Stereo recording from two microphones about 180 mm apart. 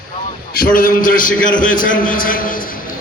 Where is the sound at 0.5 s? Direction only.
50° left (ahead or behind).